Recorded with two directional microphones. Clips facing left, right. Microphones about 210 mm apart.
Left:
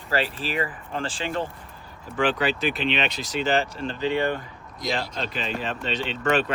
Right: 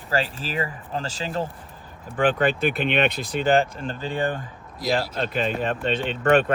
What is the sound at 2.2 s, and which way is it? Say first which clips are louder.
Speech: right 3 dB; 55° right (ahead or behind).